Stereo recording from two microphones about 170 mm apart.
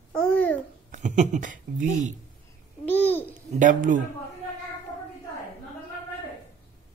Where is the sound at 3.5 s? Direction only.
50° right (ahead or behind).